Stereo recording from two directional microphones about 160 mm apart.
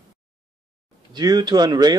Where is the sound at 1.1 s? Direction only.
25° right (ahead or behind).